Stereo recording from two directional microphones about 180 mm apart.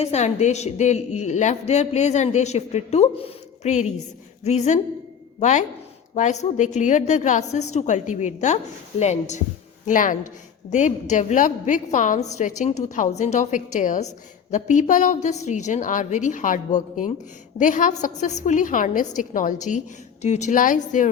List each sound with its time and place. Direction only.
0.0 s a woman's voice: 40° left (ahead or behind)